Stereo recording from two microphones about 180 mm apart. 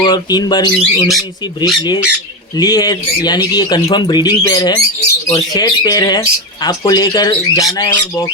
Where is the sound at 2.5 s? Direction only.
20° left (ahead or behind).